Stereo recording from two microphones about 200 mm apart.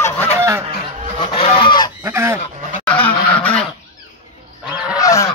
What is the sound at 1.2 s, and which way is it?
Goose, 25° left (ahead or behind).